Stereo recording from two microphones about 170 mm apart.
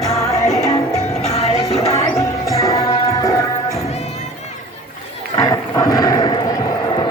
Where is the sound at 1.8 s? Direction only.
35° left (ahead or behind).